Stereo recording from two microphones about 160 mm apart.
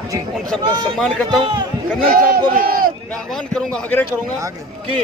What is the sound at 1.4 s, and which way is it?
Speech, 30° right (ahead or behind).